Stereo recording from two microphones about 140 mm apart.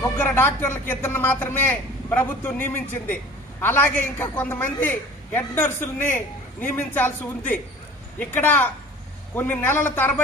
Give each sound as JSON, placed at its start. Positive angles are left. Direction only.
{"t": 0.2, "sound": "a man's voice", "side_deg": 15}